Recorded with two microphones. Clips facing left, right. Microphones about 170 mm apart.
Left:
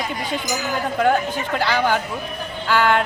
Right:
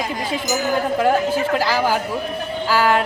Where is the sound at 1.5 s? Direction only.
5° right (ahead or behind).